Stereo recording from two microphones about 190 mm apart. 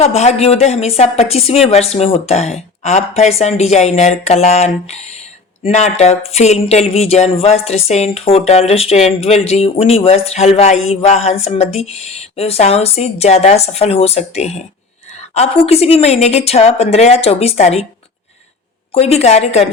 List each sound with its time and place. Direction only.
0.0 s speech: 35° left (ahead or behind)
18.9 s speech: 30° left (ahead or behind)